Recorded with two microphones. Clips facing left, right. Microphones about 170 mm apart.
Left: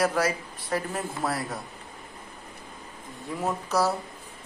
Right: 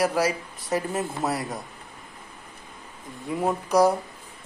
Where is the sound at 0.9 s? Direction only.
10° right (ahead or behind).